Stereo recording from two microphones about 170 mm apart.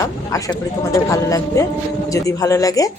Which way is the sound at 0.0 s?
20° left (ahead or behind).